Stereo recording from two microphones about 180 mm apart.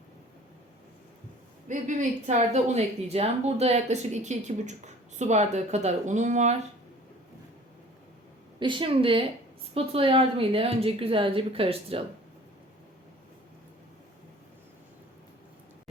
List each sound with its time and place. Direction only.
1.6 s speech: 45° right (ahead or behind)
8.5 s a woman's voice: 25° right (ahead or behind)